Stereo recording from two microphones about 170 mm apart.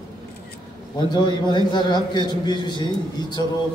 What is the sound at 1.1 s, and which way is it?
A man's voice, 25° left (ahead or behind).